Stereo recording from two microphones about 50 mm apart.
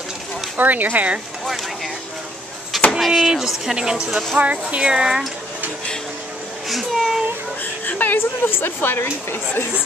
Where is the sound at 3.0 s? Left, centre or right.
Centre.